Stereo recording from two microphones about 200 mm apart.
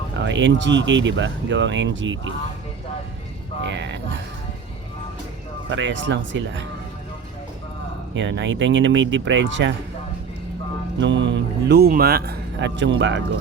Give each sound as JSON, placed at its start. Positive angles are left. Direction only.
{"t": 0.2, "sound": "speech", "side_deg": -65}
{"t": 3.6, "sound": "speech", "side_deg": -65}
{"t": 5.6, "sound": "speech", "side_deg": -65}
{"t": 8.1, "sound": "speech", "side_deg": -65}
{"t": 11.0, "sound": "speech", "side_deg": -65}